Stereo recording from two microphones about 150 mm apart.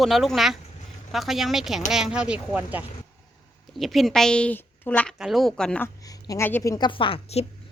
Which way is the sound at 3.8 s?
Centre (ahead or behind).